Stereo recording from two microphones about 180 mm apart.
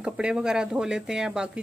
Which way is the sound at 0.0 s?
5° right (ahead or behind).